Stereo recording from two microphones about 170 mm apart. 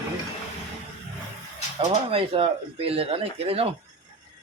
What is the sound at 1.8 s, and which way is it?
Speech, 35° right (ahead or behind).